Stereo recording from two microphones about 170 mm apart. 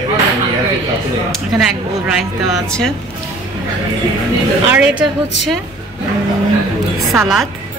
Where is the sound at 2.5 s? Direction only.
5° left (ahead or behind).